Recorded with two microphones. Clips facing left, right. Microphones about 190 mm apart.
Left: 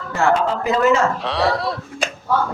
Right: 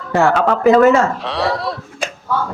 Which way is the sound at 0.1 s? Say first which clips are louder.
Right 4 dB; 70° right (ahead or behind).